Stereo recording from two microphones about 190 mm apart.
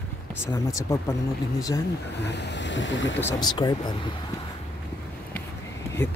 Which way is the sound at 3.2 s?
20° left (ahead or behind).